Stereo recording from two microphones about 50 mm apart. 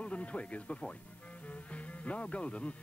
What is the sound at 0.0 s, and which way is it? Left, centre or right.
Speech, left.